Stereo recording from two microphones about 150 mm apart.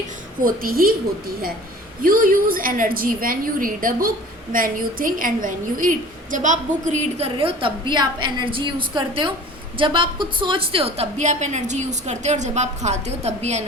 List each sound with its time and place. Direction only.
0.4 s a woman's voice: 75° right (ahead or behind)
2.0 s a woman's voice: 70° right (ahead or behind); by 13.7 s 45° right (ahead or behind)